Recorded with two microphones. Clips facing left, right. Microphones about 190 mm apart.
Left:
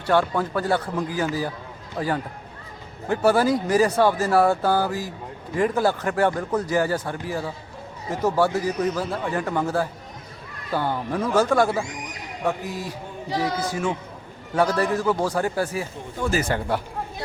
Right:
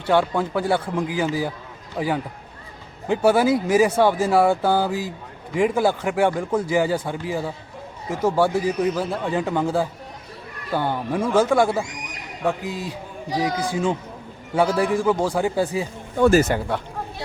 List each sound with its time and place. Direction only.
0.1 s speech: 15° right (ahead or behind)
16.1 s speech: 55° right (ahead or behind)